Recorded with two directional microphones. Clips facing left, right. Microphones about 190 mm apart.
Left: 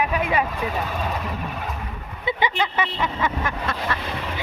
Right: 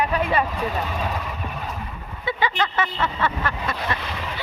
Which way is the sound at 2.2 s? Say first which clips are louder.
Even; 15° left (ahead or behind).